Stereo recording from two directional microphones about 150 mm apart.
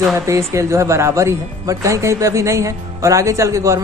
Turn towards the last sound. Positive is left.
turn(degrees=-20)  # may be behind; listen again after turning